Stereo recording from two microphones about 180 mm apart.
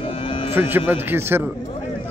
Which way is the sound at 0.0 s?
30° left (ahead or behind).